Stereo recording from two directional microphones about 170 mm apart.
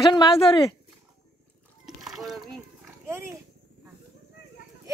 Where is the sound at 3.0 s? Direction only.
15° right (ahead or behind).